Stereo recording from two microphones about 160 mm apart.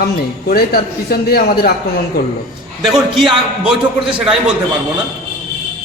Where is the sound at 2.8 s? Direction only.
Centre (ahead or behind).